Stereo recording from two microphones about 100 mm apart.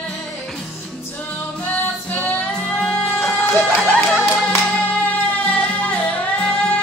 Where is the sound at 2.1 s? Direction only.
15° left (ahead or behind).